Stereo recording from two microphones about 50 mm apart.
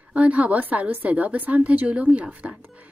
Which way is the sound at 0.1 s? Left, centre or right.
Right.